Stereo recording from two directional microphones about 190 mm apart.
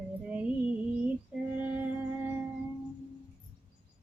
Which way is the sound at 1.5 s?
10° right (ahead or behind).